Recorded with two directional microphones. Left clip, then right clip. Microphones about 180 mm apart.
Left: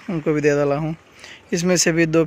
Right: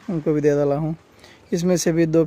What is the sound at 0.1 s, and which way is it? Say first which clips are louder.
Speech: left 1 dB; 10° right (ahead or behind).